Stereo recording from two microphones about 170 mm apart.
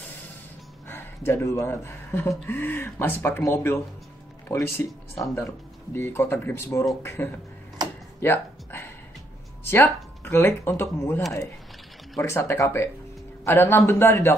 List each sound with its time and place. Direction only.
0.8 s speech: 15° left (ahead or behind)
8.2 s a sound: 15° left (ahead or behind)
9.7 s speech: 15° left (ahead or behind)